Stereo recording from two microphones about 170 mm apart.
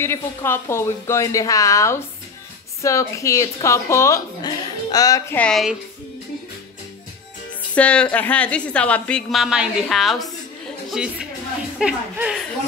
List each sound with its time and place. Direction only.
0.0 s a woman's voice: 15° left (ahead or behind)
7.7 s a woman's voice: 5° left (ahead or behind)